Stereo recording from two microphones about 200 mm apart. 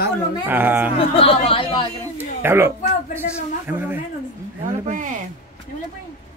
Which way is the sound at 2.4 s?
10° right (ahead or behind).